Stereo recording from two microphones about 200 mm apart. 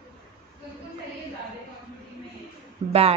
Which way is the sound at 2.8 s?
30° right (ahead or behind).